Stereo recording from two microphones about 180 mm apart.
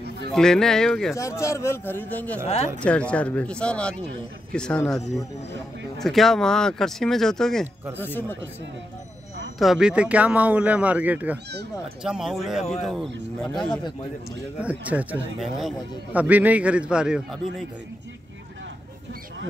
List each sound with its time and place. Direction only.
0.3 s speech: 5° left (ahead or behind)
1.1 s a man's voice: 15° left (ahead or behind)
2.4 s speech: 35° left (ahead or behind)
2.8 s a man's voice: 5° left (ahead or behind)
9.6 s a man's voice: centre (ahead or behind)
14.6 s a man's voice: 10° right (ahead or behind)